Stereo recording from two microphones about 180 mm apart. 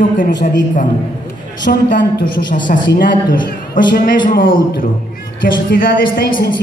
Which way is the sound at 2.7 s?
50° left (ahead or behind).